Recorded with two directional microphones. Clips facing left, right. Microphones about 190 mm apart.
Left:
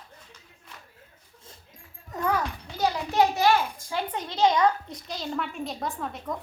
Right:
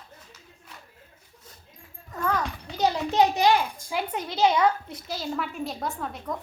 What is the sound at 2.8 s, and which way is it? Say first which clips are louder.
A child's voice: right 1 dB; 20° right (ahead or behind).